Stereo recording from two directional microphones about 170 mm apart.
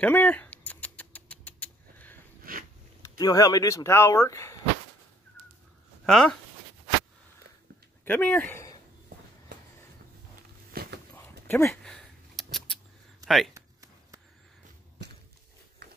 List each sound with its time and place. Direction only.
0.0 s rodents: 10° left (ahead or behind)
2.5 s biting: 60° right (ahead or behind)
3.0 s speech: 20° left (ahead or behind)
6.0 s speech: 5° left (ahead or behind)
8.0 s speech: 10° left (ahead or behind)
10.7 s a sound: 65° right (ahead or behind)
11.4 s speech: 15° left (ahead or behind)
11.7 s a sound: 5° left (ahead or behind)
13.6 s a sound: 20° right (ahead or behind)